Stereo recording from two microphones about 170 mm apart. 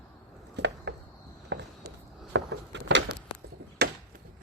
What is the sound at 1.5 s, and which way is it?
Walk, 90° right.